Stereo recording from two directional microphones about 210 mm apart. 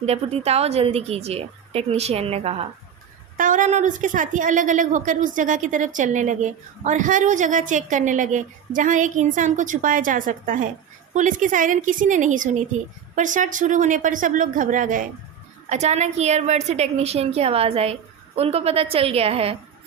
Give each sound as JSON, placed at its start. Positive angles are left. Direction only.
{"t": 0.0, "sound": "a woman's voice", "side_deg": -30}